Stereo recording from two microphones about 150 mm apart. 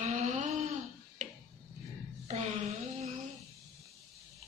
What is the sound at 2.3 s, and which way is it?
Music, 50° right (ahead or behind).